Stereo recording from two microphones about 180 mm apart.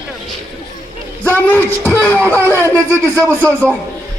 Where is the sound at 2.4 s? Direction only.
15° right (ahead or behind).